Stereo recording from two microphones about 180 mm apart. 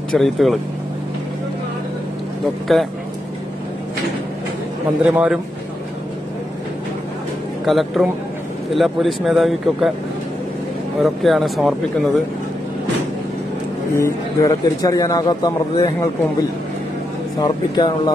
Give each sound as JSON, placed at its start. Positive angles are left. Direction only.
{"t": 0.1, "sound": "speech", "side_deg": 0}
{"t": 5.0, "sound": "a man's voice", "side_deg": -5}
{"t": 7.6, "sound": "speech", "side_deg": 0}
{"t": 11.0, "sound": "speech", "side_deg": 0}
{"t": 13.9, "sound": "a man's voice", "side_deg": 15}
{"t": 17.4, "sound": "a man's voice", "side_deg": 25}